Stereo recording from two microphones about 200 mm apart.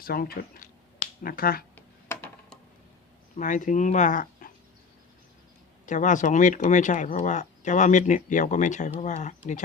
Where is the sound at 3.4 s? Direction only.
40° left (ahead or behind).